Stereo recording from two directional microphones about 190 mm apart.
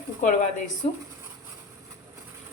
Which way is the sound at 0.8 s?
35° left (ahead or behind).